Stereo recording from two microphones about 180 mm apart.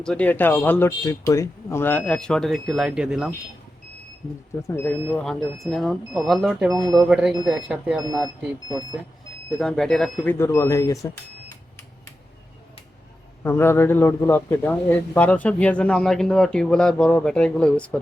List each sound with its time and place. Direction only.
0.0 s speech: 5° left (ahead or behind)
4.6 s speech: 10° left (ahead or behind); by 8.0 s 5° right (ahead or behind)
8.7 s speech: 20° right (ahead or behind)
9.6 s speech: 5° left (ahead or behind)
10.3 s speech: 15° left (ahead or behind)
13.4 s speech: 15° left (ahead or behind)